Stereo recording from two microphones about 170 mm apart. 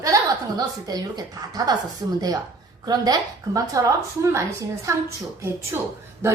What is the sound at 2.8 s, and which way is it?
A woman's voice, 25° right (ahead or behind).